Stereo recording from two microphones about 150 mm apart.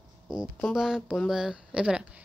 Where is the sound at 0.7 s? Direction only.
5° right (ahead or behind).